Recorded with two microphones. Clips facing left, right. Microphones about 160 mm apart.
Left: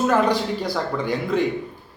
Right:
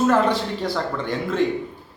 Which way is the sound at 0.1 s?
Centre (ahead or behind).